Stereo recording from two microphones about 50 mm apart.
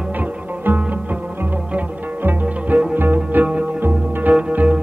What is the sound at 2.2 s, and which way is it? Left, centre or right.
Music, right.